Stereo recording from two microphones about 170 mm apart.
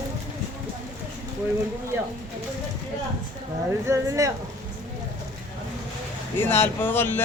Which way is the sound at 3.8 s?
15° right (ahead or behind).